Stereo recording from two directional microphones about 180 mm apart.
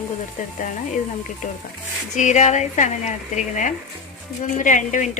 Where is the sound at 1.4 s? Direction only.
45° left (ahead or behind).